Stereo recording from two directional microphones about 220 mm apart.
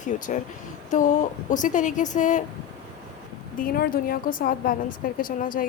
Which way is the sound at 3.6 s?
40° left (ahead or behind).